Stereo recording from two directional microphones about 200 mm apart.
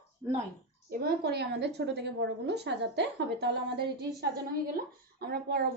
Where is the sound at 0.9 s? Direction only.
50° right (ahead or behind).